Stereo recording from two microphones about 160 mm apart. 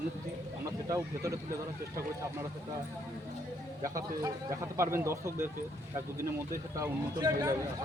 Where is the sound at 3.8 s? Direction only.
20° right (ahead or behind).